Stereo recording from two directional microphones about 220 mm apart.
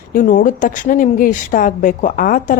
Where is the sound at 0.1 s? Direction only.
35° left (ahead or behind).